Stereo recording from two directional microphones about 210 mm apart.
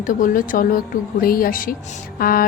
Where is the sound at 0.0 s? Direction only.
40° left (ahead or behind).